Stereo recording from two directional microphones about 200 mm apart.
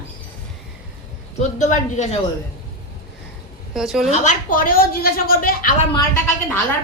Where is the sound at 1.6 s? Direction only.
35° left (ahead or behind).